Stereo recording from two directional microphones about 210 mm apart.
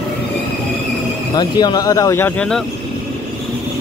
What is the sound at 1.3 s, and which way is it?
Speech, 20° left (ahead or behind).